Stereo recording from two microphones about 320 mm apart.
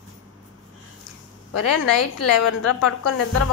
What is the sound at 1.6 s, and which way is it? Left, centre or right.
A woman's voice, left.